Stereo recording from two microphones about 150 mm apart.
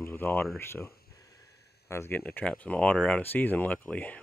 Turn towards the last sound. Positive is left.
turn(degrees=10)  # may be behind; listen again after turning